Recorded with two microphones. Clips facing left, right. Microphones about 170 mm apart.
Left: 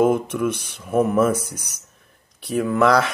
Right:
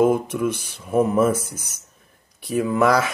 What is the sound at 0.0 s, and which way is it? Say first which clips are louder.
Mantra: even; 60° left (ahead or behind).